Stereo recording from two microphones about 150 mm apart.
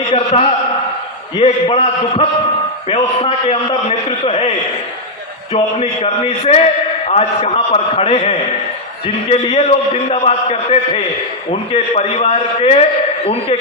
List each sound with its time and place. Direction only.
0.1 s a sound: 45° left (ahead or behind)
1.4 s a man's voice: 40° left (ahead or behind)
5.8 s a man's voice: 40° left (ahead or behind)